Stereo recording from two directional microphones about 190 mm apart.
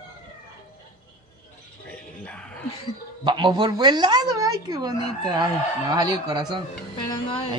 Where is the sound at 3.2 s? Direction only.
25° right (ahead or behind).